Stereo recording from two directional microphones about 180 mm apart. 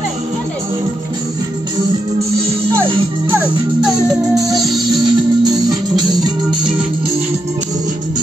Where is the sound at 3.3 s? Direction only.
10° right (ahead or behind).